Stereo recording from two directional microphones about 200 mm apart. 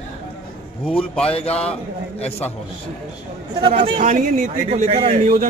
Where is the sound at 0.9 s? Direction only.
30° left (ahead or behind).